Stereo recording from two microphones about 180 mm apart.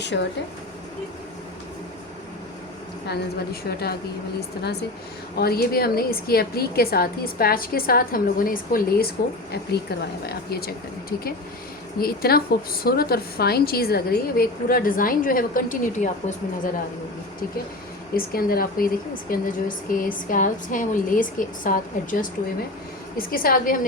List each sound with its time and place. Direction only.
0.0 s speech: 80° left
3.1 s a woman's voice: 60° left (ahead or behind)
11.9 s a woman's voice: 55° left (ahead or behind)
18.1 s a woman's voice: 55° left (ahead or behind)